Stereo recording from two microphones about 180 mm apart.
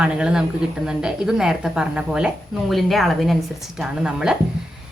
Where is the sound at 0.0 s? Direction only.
5° right (ahead or behind).